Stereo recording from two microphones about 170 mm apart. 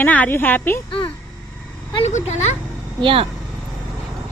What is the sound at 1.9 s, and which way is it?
Speech, 40° left (ahead or behind).